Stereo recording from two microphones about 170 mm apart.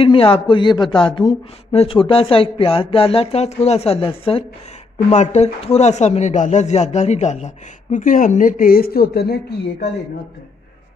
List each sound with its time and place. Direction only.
0.0 s speech: 30° left (ahead or behind)
4.9 s speech: 45° left (ahead or behind); by 9.8 s 70° left (ahead or behind)